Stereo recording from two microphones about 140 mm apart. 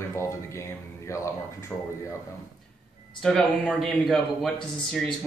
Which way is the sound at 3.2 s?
5° left (ahead or behind).